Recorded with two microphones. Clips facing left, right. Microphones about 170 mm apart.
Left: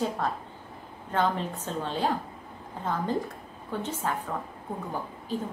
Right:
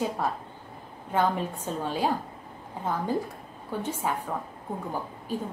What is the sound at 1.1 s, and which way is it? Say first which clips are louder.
A woman's voice: right 1 dB; 10° right (ahead or behind).